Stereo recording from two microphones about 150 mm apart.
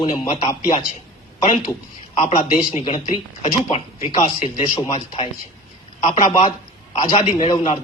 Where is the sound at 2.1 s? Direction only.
50° left (ahead or behind).